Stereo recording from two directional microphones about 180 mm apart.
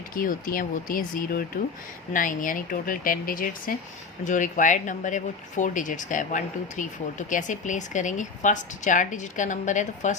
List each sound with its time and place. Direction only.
0.1 s speech: 50° left (ahead or behind)